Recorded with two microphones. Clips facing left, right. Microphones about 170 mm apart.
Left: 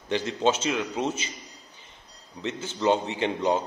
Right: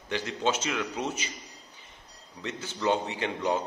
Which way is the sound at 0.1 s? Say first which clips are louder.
Left 4 dB; 25° left (ahead or behind).